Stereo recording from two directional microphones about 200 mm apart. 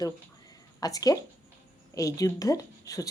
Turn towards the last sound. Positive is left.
turn(degrees=15)  # may be behind; listen again after turning